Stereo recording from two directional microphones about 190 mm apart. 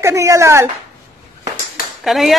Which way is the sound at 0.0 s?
15° right (ahead or behind).